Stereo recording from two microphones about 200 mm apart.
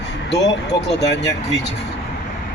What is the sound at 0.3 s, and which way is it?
Speech, 60° left (ahead or behind).